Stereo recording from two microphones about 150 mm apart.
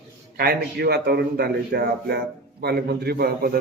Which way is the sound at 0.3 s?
90° right.